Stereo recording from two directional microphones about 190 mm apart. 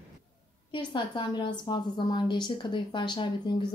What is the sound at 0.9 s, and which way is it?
A woman's voice, 25° left (ahead or behind).